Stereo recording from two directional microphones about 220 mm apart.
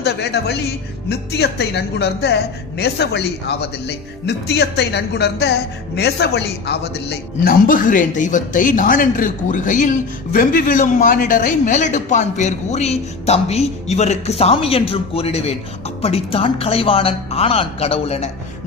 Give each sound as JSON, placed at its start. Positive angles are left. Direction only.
{"t": 0.0, "sound": "a man's voice", "side_deg": 50}